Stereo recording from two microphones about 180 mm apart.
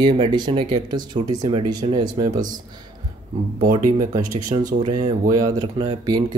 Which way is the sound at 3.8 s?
20° right (ahead or behind).